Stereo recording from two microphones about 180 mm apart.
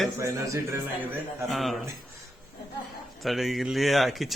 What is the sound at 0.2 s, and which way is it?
Speech, 15° right (ahead or behind).